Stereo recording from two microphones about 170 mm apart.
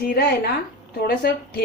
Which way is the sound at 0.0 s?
65° left (ahead or behind).